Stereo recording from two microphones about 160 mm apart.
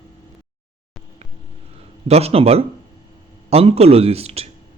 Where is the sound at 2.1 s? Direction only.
40° right (ahead or behind).